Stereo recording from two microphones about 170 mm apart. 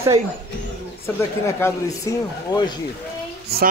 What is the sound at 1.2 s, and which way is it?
Speech, 15° left (ahead or behind).